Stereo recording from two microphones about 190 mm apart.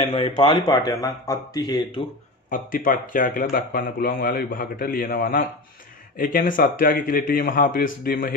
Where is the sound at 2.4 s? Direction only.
45° left (ahead or behind).